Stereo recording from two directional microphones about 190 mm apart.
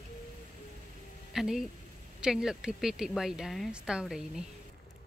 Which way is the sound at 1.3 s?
Centre (ahead or behind).